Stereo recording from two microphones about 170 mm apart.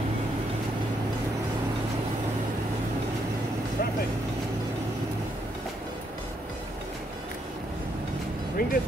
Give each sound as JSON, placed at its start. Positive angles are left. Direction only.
{"t": 8.6, "sound": "music", "side_deg": 60}